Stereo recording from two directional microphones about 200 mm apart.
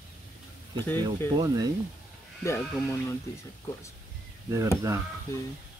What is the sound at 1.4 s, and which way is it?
Speech, 20° right (ahead or behind).